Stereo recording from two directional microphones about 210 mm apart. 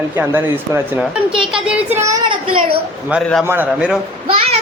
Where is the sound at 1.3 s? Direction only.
25° right (ahead or behind).